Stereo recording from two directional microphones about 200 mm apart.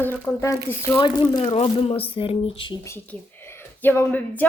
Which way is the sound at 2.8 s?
10° left (ahead or behind).